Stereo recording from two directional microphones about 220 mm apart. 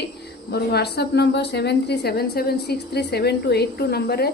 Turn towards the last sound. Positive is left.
turn(degrees=45)  # may be behind; listen again after turning